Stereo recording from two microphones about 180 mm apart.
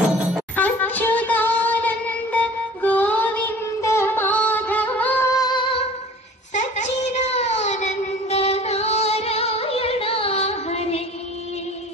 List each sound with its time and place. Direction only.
0.6 s music: 10° left (ahead or behind); by 5.9 s 30° left (ahead or behind)
6.5 s child singing: 40° left (ahead or behind)